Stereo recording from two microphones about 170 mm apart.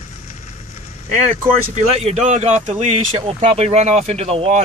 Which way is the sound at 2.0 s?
45° right (ahead or behind).